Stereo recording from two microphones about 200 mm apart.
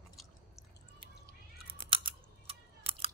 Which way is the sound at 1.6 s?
25° right (ahead or behind).